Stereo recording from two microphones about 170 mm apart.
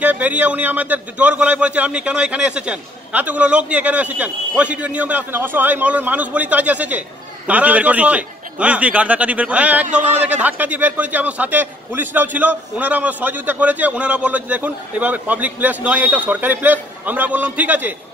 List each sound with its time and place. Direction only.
0.0 s a man's voice: 10° right (ahead or behind)
9.8 s a man's voice: 45° right (ahead or behind)
10.2 s a man's voice: 10° right (ahead or behind)